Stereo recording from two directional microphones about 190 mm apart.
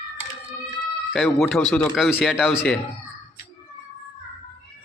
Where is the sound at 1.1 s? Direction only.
Centre (ahead or behind).